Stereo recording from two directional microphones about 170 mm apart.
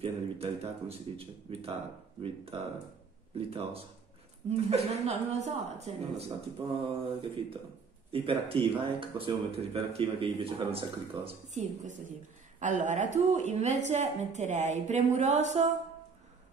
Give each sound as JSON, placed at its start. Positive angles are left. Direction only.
{"t": 0.0, "sound": "speech", "side_deg": -35}
{"t": 3.3, "sound": "a woman's voice", "side_deg": -35}